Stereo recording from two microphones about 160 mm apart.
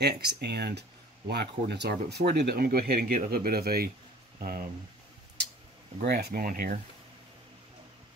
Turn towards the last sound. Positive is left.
turn(degrees=-60)  # may be behind; listen again after turning